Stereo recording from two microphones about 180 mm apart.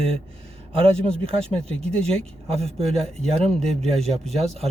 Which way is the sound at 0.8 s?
30° right (ahead or behind).